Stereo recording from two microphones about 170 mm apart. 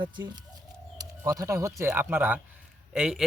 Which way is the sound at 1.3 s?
15° right (ahead or behind).